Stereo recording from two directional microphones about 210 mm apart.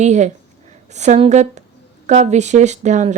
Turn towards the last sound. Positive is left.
turn(degrees=-35)  # may be behind; listen again after turning